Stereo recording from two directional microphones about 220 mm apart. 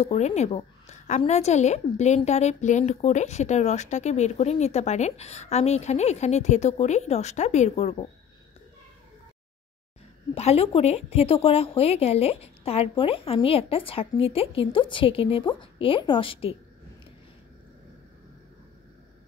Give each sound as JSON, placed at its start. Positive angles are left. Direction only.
{"t": 0.0, "sound": "a woman's voice", "side_deg": 30}
{"t": 10.3, "sound": "a woman's voice", "side_deg": 30}